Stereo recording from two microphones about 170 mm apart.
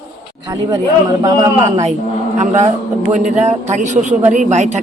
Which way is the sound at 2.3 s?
40° right (ahead or behind).